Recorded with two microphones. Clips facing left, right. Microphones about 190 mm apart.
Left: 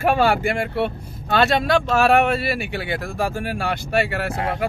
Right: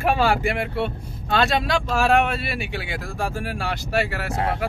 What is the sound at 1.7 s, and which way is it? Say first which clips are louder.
Speech: left 4 dB; 65° left (ahead or behind).